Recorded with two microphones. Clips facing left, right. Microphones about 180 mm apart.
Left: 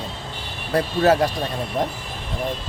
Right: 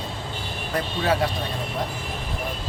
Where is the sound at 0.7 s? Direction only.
40° left (ahead or behind).